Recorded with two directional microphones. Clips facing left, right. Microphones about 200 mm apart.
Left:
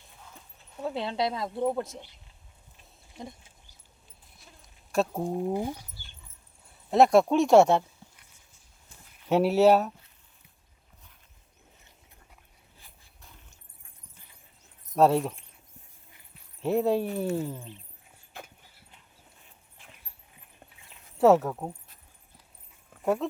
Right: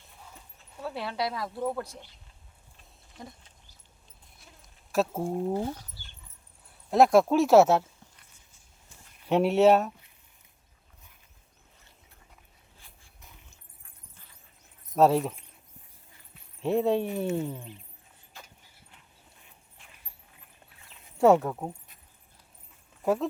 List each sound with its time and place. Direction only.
0.8 s speech: 20° left (ahead or behind)
4.4 s a sound: centre (ahead or behind)
5.2 s speech: 15° left (ahead or behind)
6.9 s speech: centre (ahead or behind)
9.3 s speech: centre (ahead or behind)
14.9 s speech: centre (ahead or behind)
16.6 s speech: centre (ahead or behind)
18.3 s horse: 60° left (ahead or behind)
21.2 s speech: centre (ahead or behind)
23.0 s speech: centre (ahead or behind)